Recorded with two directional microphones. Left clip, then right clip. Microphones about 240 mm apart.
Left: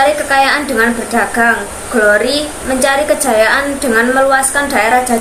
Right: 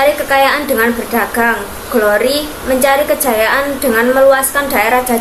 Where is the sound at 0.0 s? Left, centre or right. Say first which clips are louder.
Even; left.